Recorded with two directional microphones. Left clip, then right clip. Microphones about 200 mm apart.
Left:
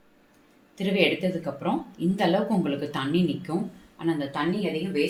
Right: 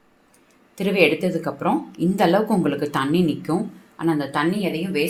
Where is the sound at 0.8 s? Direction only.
35° right (ahead or behind).